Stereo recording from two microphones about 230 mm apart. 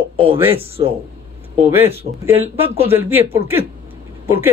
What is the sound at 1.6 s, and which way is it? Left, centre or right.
A man's voice, centre.